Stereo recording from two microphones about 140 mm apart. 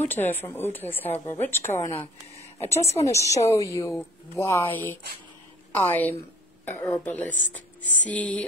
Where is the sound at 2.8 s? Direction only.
50° left (ahead or behind).